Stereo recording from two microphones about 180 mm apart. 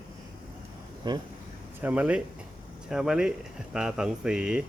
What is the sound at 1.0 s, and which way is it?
Speech, 25° right (ahead or behind).